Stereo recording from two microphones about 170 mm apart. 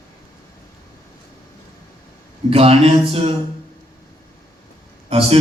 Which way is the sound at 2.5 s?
35° right (ahead or behind).